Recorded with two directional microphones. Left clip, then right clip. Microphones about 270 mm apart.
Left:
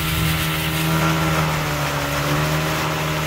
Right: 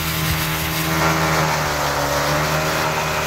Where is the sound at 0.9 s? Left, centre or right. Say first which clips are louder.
Right 4 dB; right.